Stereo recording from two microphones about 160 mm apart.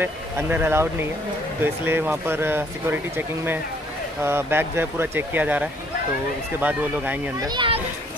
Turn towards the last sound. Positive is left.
turn(degrees=-30)  # may be behind; listen again after turning